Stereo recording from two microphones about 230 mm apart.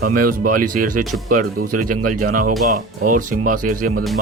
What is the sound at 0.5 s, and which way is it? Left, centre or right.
Speech, right.